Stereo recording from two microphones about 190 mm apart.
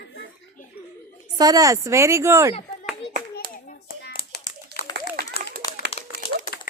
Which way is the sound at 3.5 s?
45° left (ahead or behind).